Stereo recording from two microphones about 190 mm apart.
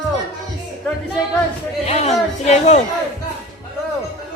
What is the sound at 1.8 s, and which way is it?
Speech, 35° left (ahead or behind).